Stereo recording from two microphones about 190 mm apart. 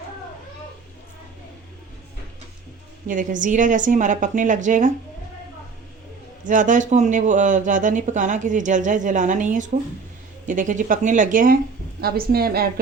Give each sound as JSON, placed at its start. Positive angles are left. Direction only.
{"t": 3.1, "sound": "a woman's voice", "side_deg": -45}
{"t": 6.4, "sound": "a woman's voice", "side_deg": -45}